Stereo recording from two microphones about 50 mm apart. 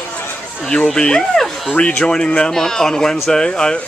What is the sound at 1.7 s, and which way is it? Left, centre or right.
Speech, left.